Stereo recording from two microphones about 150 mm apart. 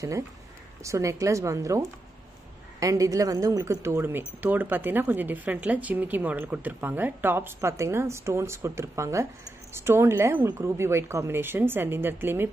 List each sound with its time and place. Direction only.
0.8 s a woman's voice: 20° right (ahead or behind)